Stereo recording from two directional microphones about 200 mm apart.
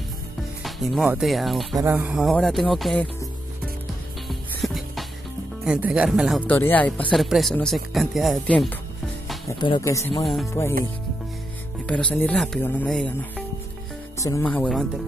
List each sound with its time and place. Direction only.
0.7 s speech: centre (ahead or behind)
4.3 s music: centre (ahead or behind)
5.7 s speech: 5° right (ahead or behind)
9.5 s speech: 20° left (ahead or behind)
10.2 s speech: centre (ahead or behind)
11.8 s speech: 5° left (ahead or behind)
14.2 s speech: 10° left (ahead or behind)